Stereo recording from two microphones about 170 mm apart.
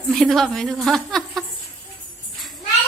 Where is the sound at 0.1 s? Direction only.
Centre (ahead or behind).